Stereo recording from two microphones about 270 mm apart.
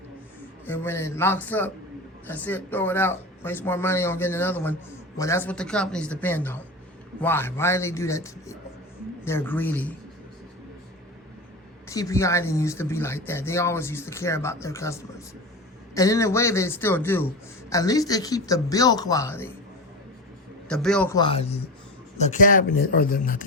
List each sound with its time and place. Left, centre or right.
0.6 s speech: centre
11.9 s speech: centre
16.0 s speech: centre
20.7 s a man's voice: centre
21.2 s speech: left